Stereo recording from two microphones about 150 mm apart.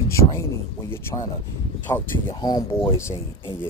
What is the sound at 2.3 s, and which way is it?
Speech, 25° left (ahead or behind).